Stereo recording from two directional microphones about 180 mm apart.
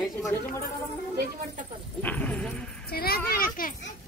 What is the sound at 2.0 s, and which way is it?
Speech, 10° left (ahead or behind).